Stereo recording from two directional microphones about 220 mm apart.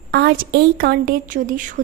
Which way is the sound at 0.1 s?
45° right (ahead or behind).